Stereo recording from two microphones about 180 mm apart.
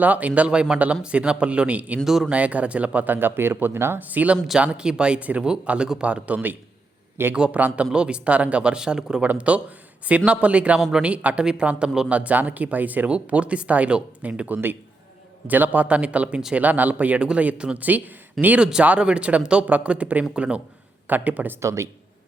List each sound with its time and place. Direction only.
0.0 s speech: 10° right (ahead or behind)